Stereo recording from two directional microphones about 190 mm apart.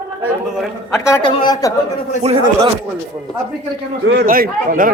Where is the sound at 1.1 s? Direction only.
20° left (ahead or behind).